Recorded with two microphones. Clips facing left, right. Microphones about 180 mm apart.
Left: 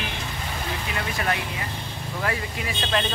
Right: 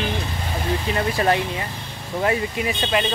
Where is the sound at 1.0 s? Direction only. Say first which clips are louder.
Right 7 dB; 30° right (ahead or behind).